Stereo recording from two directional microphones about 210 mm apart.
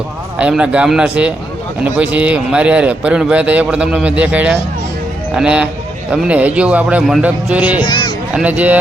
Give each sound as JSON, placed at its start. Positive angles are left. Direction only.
{"t": 0.3, "sound": "a man's voice", "side_deg": -5}
{"t": 7.9, "sound": "speech", "side_deg": 20}
{"t": 8.3, "sound": "speech", "side_deg": -5}